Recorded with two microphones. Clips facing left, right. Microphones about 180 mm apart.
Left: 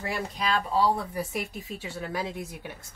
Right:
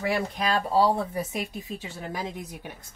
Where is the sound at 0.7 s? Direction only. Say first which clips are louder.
Right 4 dB; 20° right (ahead or behind).